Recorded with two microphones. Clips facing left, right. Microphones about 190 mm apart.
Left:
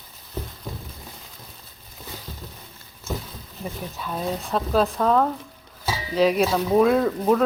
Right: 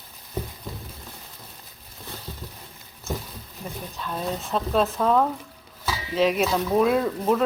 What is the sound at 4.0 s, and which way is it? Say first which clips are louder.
Speech: left 1 dB; 5° left (ahead or behind).